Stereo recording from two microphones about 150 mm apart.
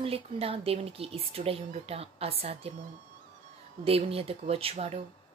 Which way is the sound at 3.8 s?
40° right (ahead or behind).